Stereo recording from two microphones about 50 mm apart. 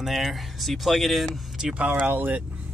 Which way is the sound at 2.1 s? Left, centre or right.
Right.